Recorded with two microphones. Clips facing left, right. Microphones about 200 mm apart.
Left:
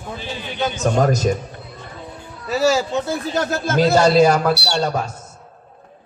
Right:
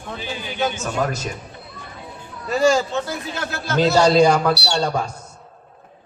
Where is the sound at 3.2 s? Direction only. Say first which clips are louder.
Left 7 dB; 40° left (ahead or behind).